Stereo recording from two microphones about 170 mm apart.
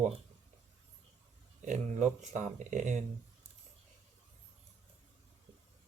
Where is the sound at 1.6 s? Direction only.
45° right (ahead or behind).